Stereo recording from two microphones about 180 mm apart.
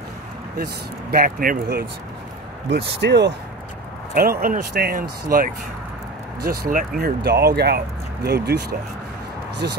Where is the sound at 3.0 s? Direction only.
70° right (ahead or behind).